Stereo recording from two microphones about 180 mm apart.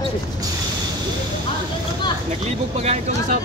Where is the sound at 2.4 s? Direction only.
35° right (ahead or behind).